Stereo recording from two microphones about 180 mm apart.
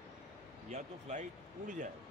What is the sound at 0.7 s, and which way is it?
Speech, 40° right (ahead or behind).